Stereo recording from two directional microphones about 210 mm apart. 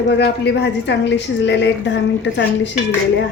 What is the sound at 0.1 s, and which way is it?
A woman's voice, 55° left (ahead or behind).